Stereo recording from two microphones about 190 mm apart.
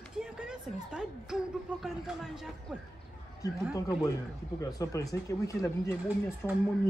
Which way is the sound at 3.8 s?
20° left (ahead or behind).